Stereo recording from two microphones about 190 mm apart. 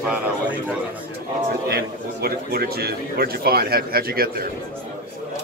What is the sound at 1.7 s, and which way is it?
Speech, 55° right (ahead or behind).